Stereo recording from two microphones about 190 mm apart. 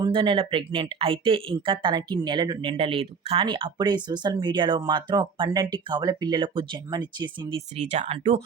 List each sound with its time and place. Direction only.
0.0 s speech: 25° right (ahead or behind)
7.8 s speech: 35° right (ahead or behind)